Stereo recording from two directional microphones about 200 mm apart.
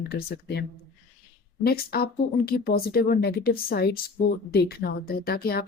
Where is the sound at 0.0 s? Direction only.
50° left (ahead or behind).